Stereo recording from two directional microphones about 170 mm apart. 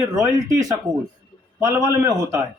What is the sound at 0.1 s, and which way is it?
A man's voice, 20° right (ahead or behind).